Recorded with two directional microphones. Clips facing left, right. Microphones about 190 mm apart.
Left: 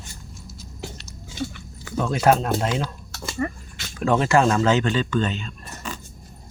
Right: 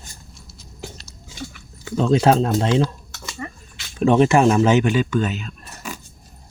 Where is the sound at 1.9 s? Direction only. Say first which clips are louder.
Right 3 dB; 25° right (ahead or behind).